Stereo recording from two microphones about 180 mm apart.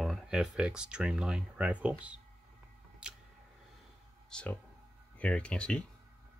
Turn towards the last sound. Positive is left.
turn(degrees=5)  # may be behind; listen again after turning